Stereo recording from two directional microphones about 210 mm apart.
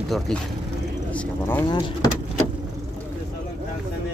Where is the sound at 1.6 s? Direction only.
20° left (ahead or behind).